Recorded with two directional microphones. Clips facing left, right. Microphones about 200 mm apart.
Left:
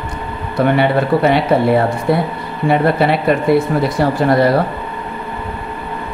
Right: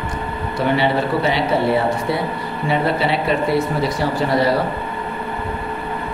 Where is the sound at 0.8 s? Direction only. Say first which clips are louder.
Left 4 dB; 55° left (ahead or behind).